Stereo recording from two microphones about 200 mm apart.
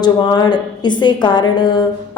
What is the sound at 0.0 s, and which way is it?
A woman's voice, 20° left (ahead or behind).